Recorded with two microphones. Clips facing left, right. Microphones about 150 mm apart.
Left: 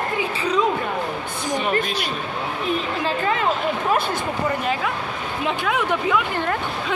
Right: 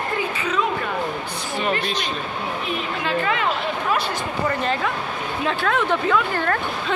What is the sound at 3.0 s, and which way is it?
Speech, 35° left (ahead or behind).